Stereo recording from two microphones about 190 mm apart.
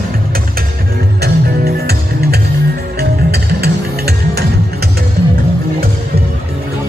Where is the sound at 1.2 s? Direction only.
55° right (ahead or behind).